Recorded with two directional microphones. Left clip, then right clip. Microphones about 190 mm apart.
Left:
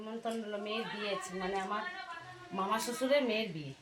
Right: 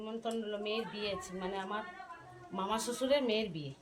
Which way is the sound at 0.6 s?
30° right (ahead or behind).